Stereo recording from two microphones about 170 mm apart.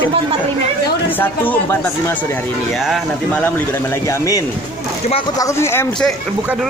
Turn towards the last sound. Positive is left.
turn(degrees=15)  # may be behind; listen again after turning